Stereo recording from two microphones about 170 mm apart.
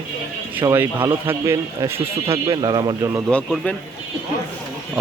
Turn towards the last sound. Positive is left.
turn(degrees=5)  # may be behind; listen again after turning